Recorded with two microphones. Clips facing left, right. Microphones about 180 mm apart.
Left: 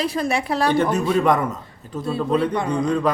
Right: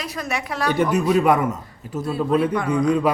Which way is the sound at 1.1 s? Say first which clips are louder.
Right 1 dB; 10° right (ahead or behind).